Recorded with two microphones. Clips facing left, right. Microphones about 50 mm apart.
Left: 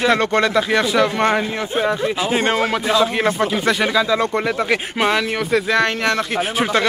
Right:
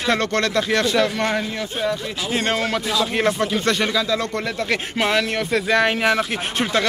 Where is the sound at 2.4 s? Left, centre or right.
Centre.